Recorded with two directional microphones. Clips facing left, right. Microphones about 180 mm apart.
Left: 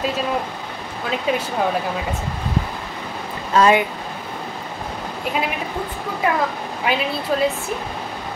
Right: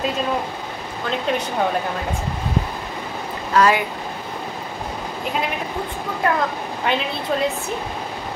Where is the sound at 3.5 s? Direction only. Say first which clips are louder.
Left 2 dB; 25° left (ahead or behind).